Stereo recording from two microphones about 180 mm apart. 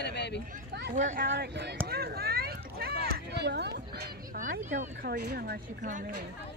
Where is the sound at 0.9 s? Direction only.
45° right (ahead or behind).